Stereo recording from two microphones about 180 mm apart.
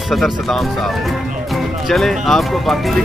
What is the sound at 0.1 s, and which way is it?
Speech, centre (ahead or behind).